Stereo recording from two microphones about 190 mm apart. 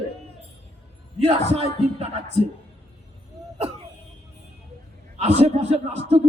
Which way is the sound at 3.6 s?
35° right (ahead or behind).